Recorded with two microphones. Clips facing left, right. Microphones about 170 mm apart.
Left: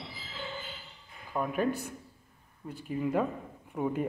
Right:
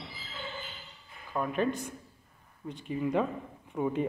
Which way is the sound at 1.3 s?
10° left (ahead or behind).